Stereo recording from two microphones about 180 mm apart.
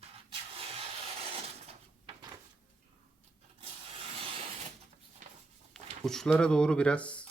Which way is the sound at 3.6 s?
30° right (ahead or behind).